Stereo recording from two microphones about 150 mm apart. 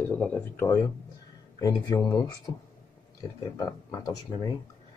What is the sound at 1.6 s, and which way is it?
Speech, 25° left (ahead or behind).